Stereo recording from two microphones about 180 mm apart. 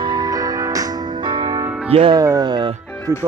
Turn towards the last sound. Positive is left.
turn(degrees=15)  # may be behind; listen again after turning